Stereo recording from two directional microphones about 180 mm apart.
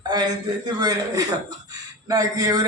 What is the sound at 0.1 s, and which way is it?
A man's voice, 25° right (ahead or behind).